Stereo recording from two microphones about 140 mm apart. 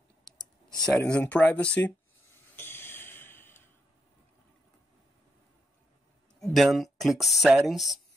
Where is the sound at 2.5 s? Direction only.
15° left (ahead or behind).